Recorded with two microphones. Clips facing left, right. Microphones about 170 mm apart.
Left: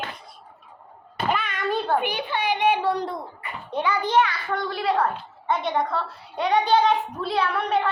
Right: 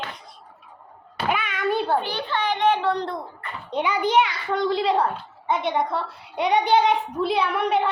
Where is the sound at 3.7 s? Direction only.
15° right (ahead or behind).